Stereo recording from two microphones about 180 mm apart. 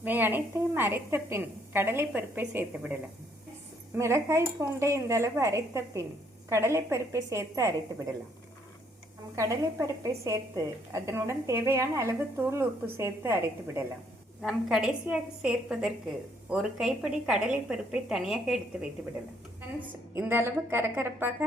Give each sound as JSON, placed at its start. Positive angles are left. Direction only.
{"t": 0.0, "sound": "a woman's voice", "side_deg": -10}
{"t": 9.3, "sound": "a woman's voice", "side_deg": -15}
{"t": 14.4, "sound": "a woman's voice", "side_deg": -5}
{"t": 20.1, "sound": "a woman's voice", "side_deg": -10}